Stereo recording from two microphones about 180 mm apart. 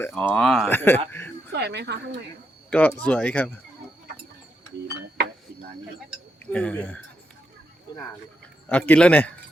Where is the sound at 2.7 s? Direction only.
10° left (ahead or behind).